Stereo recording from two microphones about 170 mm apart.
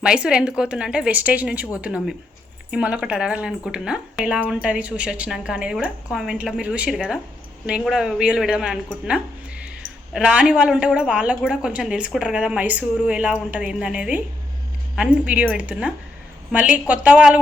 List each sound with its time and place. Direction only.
0.0 s speech: 5° right (ahead or behind)
9.0 s a sound: 5° right (ahead or behind)
10.1 s speech: 5° right (ahead or behind)